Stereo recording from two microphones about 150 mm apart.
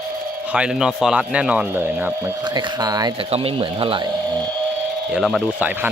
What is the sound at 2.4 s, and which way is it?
Speech, 30° right (ahead or behind).